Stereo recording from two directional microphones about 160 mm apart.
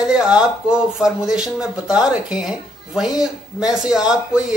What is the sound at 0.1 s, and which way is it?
Speech, 5° right (ahead or behind).